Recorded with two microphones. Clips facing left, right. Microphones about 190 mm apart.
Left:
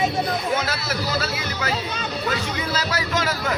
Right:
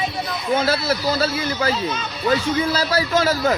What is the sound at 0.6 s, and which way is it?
A man's voice, 30° right (ahead or behind).